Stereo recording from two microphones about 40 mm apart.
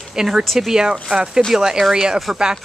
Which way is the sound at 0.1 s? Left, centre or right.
Centre.